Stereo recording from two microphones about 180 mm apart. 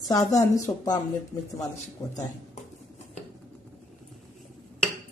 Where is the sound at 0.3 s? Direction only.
20° left (ahead or behind).